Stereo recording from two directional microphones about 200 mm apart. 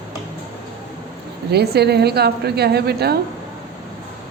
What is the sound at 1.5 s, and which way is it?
A woman's voice, 55° right (ahead or behind).